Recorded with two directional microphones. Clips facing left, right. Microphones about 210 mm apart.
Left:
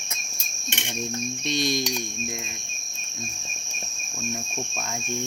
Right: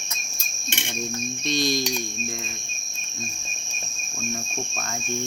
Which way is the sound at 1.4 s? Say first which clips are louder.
Right 2 dB; 25° left (ahead or behind).